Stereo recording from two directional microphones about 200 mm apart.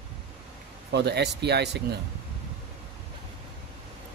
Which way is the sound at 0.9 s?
55° right (ahead or behind).